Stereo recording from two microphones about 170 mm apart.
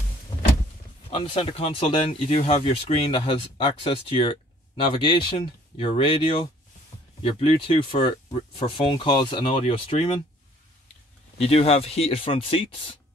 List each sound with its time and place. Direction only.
1.1 s speech: 35° left (ahead or behind)
11.3 s speech: 35° left (ahead or behind)